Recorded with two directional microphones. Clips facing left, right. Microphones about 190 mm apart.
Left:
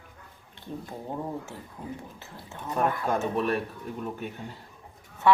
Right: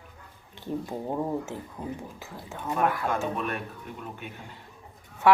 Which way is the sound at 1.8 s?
40° right (ahead or behind).